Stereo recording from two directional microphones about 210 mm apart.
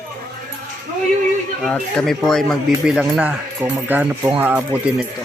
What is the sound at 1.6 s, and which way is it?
Speech, centre (ahead or behind).